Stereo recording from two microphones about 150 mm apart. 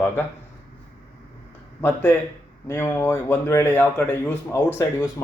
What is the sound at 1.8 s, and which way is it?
A man's voice, 10° left (ahead or behind).